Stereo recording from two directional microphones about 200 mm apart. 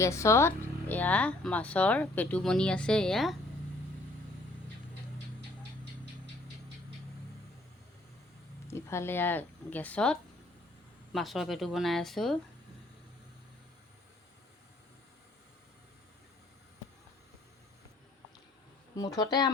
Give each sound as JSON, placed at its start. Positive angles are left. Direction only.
{"t": 0.0, "sound": "speech", "side_deg": 15}
{"t": 8.6, "sound": "speech", "side_deg": 15}
{"t": 18.9, "sound": "speech", "side_deg": 20}